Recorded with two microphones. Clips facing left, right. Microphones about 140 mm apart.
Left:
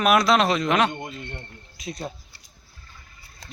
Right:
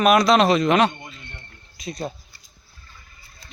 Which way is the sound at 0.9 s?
50° left (ahead or behind).